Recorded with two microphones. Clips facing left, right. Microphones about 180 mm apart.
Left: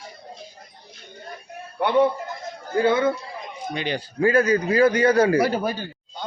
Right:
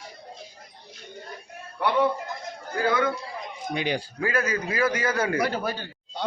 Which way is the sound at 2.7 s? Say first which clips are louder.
Left 5 dB; 25° left (ahead or behind).